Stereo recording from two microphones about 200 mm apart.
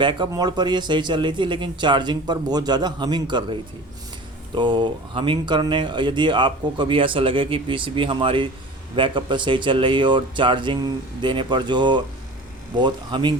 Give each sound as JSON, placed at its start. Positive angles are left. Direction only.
{"t": 0.0, "sound": "speech", "side_deg": -25}